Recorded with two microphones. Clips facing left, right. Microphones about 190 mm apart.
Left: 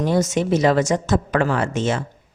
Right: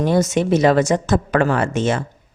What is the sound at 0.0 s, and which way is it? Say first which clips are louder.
A woman's voice: right 2 dB; 60° right (ahead or behind).